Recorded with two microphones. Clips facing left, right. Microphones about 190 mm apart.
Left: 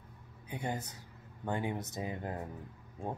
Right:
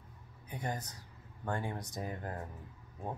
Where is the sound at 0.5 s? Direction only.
25° left (ahead or behind).